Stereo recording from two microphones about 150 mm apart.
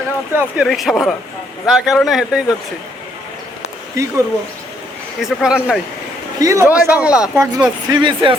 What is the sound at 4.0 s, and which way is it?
Speech, 20° right (ahead or behind).